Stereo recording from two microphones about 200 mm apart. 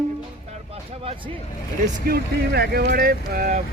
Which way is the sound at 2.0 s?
50° right (ahead or behind).